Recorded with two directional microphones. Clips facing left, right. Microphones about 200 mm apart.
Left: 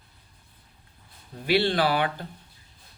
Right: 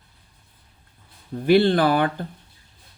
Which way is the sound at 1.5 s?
50° right (ahead or behind).